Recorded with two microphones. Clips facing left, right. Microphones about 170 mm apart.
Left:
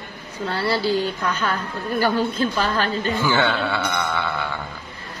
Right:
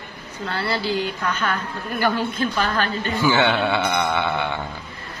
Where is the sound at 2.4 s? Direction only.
30° left (ahead or behind).